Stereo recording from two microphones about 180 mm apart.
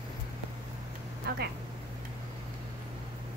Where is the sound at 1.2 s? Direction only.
65° right (ahead or behind).